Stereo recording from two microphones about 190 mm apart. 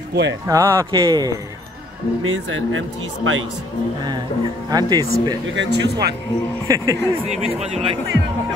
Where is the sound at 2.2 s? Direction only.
90° right.